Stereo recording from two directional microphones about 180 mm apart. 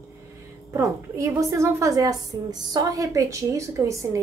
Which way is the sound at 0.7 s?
15° right (ahead or behind).